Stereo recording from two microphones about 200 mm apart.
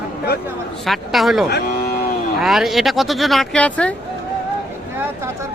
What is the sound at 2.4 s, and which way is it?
Speech, centre (ahead or behind).